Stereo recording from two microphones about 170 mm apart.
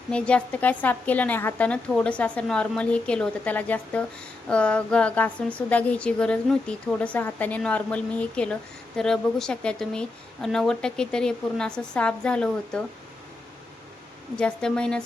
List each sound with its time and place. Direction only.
0.1 s a woman's voice: 5° left (ahead or behind)
14.3 s a woman's voice: 5° left (ahead or behind)